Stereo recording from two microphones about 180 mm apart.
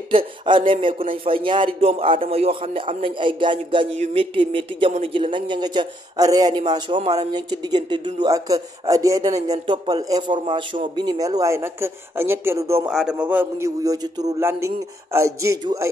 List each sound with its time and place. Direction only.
0.1 s a man's voice: 30° right (ahead or behind)